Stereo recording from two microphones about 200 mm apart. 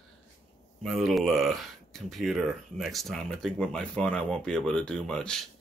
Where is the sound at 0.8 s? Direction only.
Centre (ahead or behind).